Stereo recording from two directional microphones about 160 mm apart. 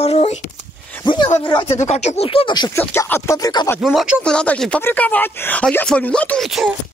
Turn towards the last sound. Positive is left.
turn(degrees=0)  # may be behind; listen again after turning